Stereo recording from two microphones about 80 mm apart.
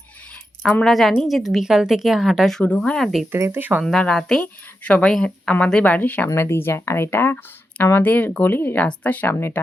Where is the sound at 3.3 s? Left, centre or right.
Right.